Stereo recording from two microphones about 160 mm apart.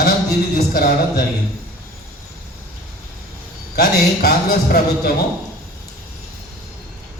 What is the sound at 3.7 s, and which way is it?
A man's voice, 70° left (ahead or behind).